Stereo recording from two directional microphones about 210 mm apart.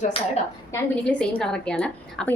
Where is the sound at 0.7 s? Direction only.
5° left (ahead or behind).